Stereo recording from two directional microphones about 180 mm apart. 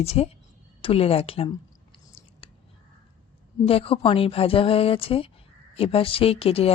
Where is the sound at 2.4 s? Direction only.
30° left (ahead or behind).